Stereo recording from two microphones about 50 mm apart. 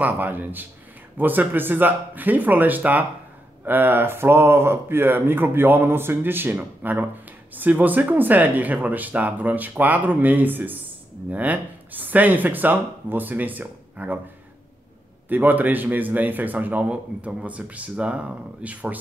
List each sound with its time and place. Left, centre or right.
0.0 s speech: right
15.2 s speech: right
16.9 s speech: right